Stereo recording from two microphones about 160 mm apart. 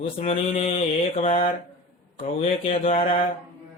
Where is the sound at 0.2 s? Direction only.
40° left (ahead or behind).